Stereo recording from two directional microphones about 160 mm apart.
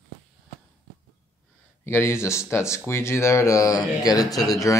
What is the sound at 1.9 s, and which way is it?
Speech, 15° left (ahead or behind).